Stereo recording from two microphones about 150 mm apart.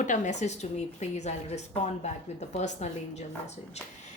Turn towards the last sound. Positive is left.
turn(degrees=50)  # may be behind; listen again after turning